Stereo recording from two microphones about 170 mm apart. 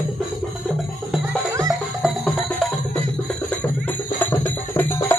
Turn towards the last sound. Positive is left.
turn(degrees=10)  # may be behind; listen again after turning